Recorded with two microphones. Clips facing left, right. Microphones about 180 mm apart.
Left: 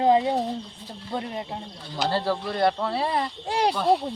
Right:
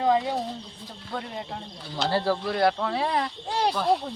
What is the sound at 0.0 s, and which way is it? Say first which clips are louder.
Speech: left 3 dB; 25° left (ahead or behind).